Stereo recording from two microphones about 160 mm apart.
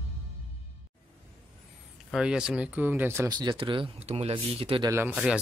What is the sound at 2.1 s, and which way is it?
Speech, 5° right (ahead or behind).